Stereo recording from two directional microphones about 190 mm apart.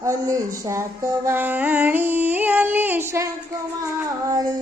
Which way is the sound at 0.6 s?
15° right (ahead or behind).